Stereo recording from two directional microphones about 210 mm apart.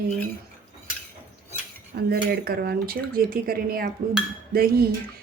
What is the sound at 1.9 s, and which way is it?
Speech, 45° right (ahead or behind).